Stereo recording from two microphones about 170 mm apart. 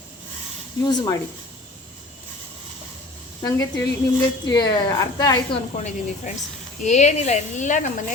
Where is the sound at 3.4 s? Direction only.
15° left (ahead or behind).